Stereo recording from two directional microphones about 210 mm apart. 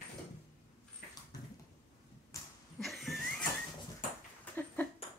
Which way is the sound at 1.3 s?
15° left (ahead or behind).